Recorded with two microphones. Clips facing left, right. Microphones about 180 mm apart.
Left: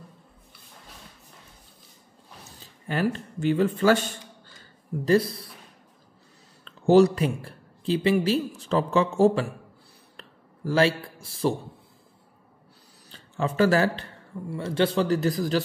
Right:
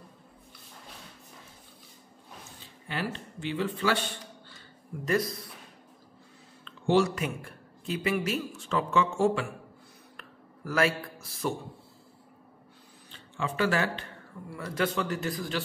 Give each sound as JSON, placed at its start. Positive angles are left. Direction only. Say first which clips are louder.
{"t": 2.6, "sound": "a man's voice", "louder": "left 8 dB", "side_deg": 45}
{"t": 5.0, "sound": "speech", "louder": "left 7 dB", "side_deg": 30}
{"t": 6.6, "sound": "speech", "louder": "left 7 dB", "side_deg": 40}
{"t": 10.1, "sound": "a sound", "louder": "left 3 dB", "side_deg": 30}
{"t": 13.1, "sound": "speech", "louder": "left 6 dB", "side_deg": 40}
{"t": 14.5, "sound": "speech", "louder": "left 6 dB", "side_deg": 25}